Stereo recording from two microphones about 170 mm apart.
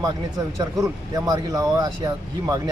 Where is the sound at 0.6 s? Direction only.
20° right (ahead or behind).